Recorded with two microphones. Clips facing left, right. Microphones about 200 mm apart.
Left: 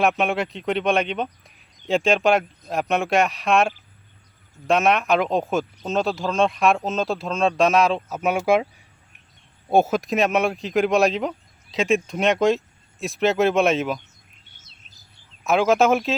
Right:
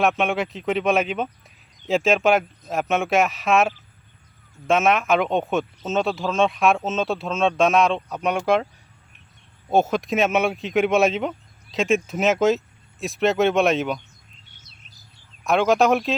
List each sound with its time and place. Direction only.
0.0 s speech: centre (ahead or behind)
9.6 s speech: 10° left (ahead or behind)
15.4 s speech: centre (ahead or behind)